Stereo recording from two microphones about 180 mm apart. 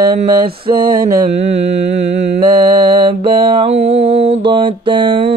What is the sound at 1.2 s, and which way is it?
Mantra, 40° right (ahead or behind).